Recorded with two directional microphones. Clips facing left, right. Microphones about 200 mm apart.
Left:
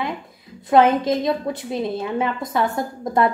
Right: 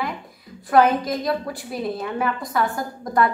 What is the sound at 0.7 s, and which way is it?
A woman's voice, 25° left (ahead or behind).